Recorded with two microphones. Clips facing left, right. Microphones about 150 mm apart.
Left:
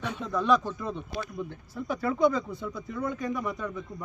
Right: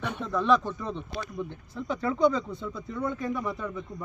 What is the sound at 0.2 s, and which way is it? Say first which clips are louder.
Speech: right 1 dB; centre (ahead or behind).